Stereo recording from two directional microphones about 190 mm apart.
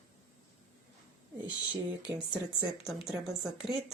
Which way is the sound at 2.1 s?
15° right (ahead or behind).